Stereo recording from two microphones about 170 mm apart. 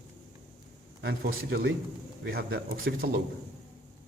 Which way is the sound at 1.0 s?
85° right.